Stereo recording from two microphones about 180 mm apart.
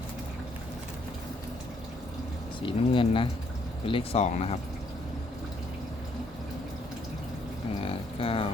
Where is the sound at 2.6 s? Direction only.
30° left (ahead or behind).